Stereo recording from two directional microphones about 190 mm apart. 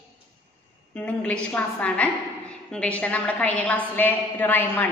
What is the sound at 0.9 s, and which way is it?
A woman's voice, 5° left (ahead or behind).